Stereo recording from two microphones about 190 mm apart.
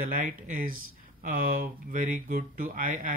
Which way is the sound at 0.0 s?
45° right (ahead or behind).